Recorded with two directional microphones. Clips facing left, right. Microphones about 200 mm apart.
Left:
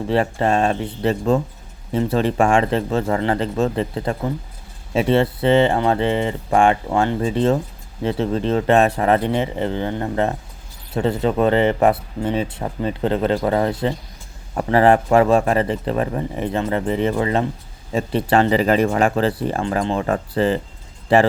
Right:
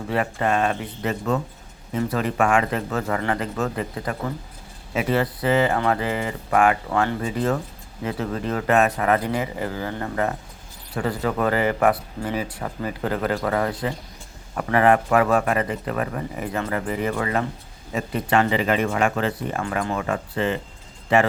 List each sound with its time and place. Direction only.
0.1 s speech: 30° left (ahead or behind)